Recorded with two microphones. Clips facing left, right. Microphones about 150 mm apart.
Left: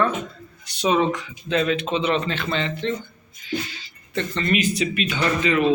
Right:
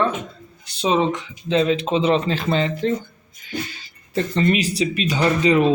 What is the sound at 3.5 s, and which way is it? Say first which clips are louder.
Music: left 1 dB; 45° right (ahead or behind).